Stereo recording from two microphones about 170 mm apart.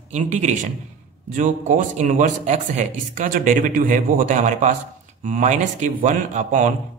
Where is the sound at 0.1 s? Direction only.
45° right (ahead or behind).